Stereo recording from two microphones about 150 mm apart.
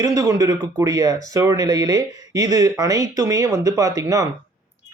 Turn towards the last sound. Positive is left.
turn(degrees=-20)  # may be behind; listen again after turning